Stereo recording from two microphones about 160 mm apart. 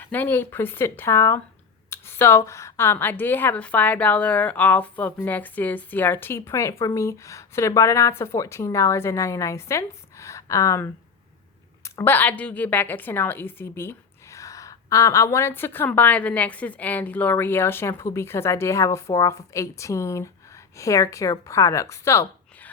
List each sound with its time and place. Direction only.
0.0 s a woman's voice: 10° left (ahead or behind)
1.9 s a sound: 15° left (ahead or behind)
2.5 s a woman's voice: 20° left (ahead or behind)
11.9 s a woman's voice: 10° left (ahead or behind)